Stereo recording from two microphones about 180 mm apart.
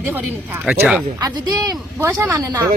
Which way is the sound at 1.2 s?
20° right (ahead or behind).